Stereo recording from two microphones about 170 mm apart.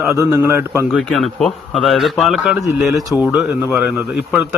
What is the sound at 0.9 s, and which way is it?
A man's voice, centre (ahead or behind).